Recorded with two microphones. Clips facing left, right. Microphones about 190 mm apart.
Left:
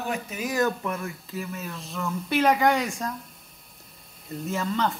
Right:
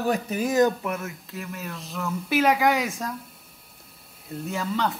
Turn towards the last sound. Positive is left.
turn(degrees=0)  # may be behind; listen again after turning